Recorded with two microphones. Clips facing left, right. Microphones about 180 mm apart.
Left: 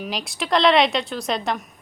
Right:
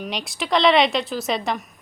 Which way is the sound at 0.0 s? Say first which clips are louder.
Even; centre (ahead or behind).